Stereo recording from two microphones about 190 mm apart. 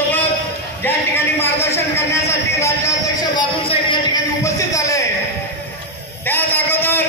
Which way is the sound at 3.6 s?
30° left (ahead or behind).